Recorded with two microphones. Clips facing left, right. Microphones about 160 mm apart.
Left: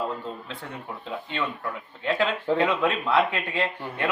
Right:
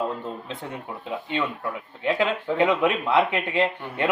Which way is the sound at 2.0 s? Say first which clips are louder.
Right 1 dB; 20° right (ahead or behind).